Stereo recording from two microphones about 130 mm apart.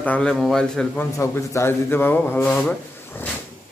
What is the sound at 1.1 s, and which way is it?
A man's voice, 20° left (ahead or behind).